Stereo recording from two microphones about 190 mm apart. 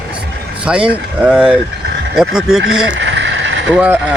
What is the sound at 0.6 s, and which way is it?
Speech, 5° right (ahead or behind).